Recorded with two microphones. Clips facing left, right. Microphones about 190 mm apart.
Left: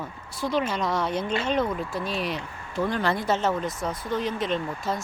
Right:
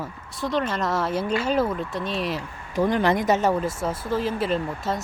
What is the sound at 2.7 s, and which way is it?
Speech, 20° right (ahead or behind).